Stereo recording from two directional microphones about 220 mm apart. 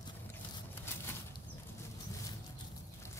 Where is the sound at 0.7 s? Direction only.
10° left (ahead or behind).